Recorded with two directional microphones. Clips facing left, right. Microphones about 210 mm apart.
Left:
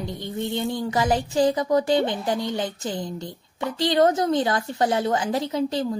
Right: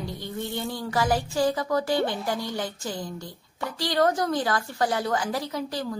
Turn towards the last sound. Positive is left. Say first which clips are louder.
# left 6 dB
turn(degrees=25)  # may be behind; listen again after turning